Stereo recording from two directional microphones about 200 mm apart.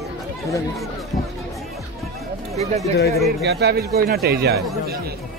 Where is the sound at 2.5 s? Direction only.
30° right (ahead or behind).